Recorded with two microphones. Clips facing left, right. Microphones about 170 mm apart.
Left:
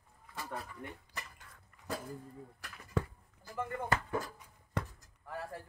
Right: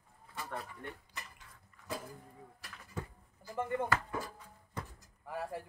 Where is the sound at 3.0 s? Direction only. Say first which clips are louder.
Left 8 dB; 85° left.